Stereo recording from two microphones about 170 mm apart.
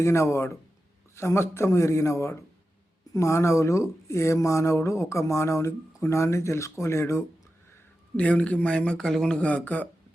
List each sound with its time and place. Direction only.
0.0 s speech: 15° left (ahead or behind)